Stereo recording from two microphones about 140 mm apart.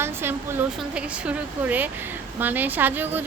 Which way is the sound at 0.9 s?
10° right (ahead or behind).